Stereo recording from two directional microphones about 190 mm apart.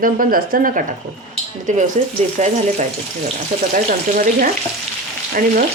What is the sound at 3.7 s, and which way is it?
Speech, 45° right (ahead or behind).